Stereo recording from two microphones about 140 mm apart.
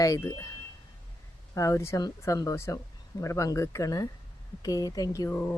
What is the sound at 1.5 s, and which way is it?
Speech, 20° left (ahead or behind).